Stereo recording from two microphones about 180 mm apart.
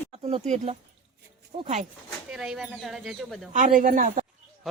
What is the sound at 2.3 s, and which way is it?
Speech, centre (ahead or behind).